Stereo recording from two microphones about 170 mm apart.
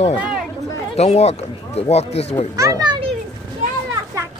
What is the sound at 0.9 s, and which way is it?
Speech, 40° left (ahead or behind).